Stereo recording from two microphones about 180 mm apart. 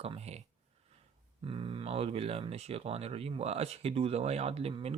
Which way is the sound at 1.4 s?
30° right (ahead or behind).